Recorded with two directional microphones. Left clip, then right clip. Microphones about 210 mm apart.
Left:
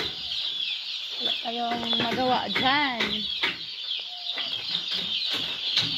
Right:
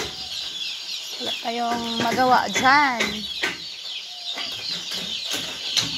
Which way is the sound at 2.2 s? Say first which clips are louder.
Right 9 dB; centre (ahead or behind).